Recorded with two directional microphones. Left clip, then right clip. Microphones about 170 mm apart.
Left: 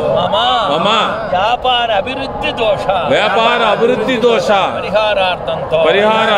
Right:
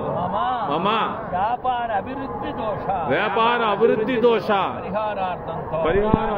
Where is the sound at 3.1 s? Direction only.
15° left (ahead or behind).